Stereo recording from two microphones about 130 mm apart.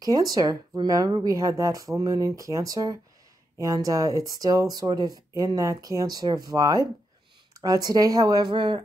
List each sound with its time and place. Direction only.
0.0 s speech: 30° right (ahead or behind)